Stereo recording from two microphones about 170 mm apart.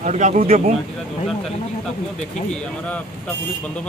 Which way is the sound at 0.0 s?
45° right (ahead or behind).